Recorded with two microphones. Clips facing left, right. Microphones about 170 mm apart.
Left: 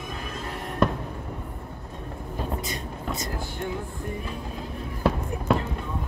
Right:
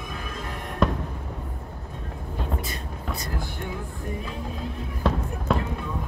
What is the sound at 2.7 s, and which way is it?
Vehicle, 20° left (ahead or behind).